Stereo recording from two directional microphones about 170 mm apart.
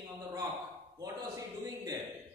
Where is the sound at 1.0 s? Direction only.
20° right (ahead or behind).